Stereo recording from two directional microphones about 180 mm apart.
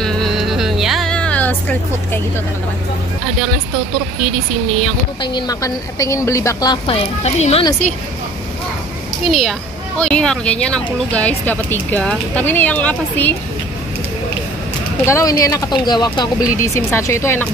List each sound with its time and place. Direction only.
0.0 s music: centre (ahead or behind)
5.2 s speech: 20° left (ahead or behind)
7.2 s speech: 35° left (ahead or behind)
9.3 s speech: centre (ahead or behind)
15.0 s speech: 15° left (ahead or behind)